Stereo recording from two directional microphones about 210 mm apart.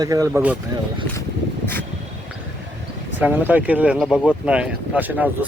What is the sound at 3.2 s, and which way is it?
Speech, 10° right (ahead or behind).